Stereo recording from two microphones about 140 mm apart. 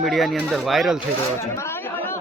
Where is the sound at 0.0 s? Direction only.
Centre (ahead or behind).